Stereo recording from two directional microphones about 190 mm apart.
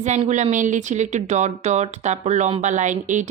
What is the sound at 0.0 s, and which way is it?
Speech, 40° right (ahead or behind).